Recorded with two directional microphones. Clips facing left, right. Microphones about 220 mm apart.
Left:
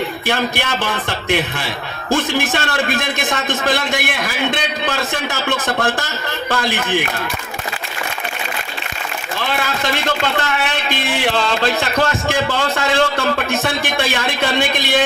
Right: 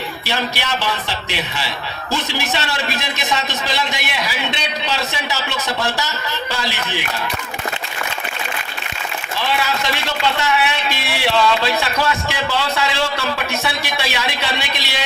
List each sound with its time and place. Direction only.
0.3 s speech: 50° left (ahead or behind)
9.5 s speech: 50° left (ahead or behind)